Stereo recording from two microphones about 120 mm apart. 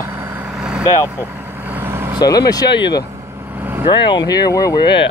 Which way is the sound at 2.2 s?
30° left (ahead or behind).